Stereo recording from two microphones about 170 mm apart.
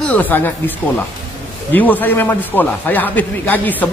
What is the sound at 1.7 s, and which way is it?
A man's voice, 10° left (ahead or behind).